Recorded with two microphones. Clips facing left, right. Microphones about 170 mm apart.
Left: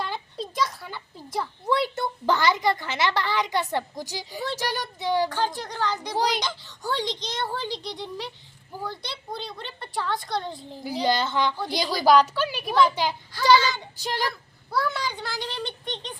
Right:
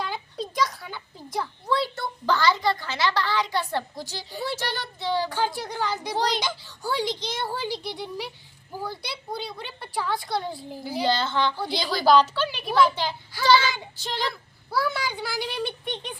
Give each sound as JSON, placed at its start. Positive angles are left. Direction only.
{"t": 0.0, "sound": "a sound", "side_deg": 0}
{"t": 1.6, "sound": "a child's voice", "side_deg": 20}
{"t": 5.5, "sound": "a woman's voice", "side_deg": -10}
{"t": 6.1, "sound": "a woman's voice", "side_deg": 10}
{"t": 7.2, "sound": "a woman's voice", "side_deg": -5}
{"t": 10.8, "sound": "a woman's voice", "side_deg": 15}
{"t": 14.7, "sound": "a woman's voice", "side_deg": -5}